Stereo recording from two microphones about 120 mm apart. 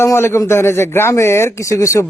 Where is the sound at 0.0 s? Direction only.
20° left (ahead or behind).